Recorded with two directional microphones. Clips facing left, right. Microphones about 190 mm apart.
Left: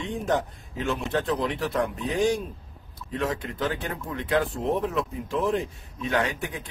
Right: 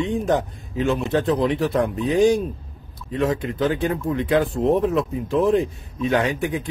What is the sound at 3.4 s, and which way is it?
Speech, 15° right (ahead or behind).